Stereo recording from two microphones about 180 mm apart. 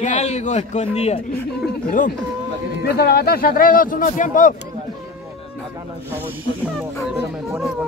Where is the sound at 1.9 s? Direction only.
50° left (ahead or behind).